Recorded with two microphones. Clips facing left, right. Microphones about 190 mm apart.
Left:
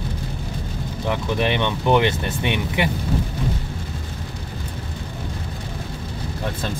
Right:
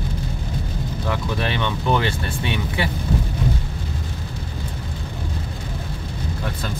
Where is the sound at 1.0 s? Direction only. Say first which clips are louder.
Left 4 dB; 20° left (ahead or behind).